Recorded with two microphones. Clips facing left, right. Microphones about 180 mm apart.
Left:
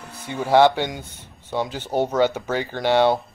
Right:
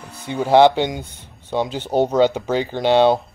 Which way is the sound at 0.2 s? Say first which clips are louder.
Right 3 dB; 20° right (ahead or behind).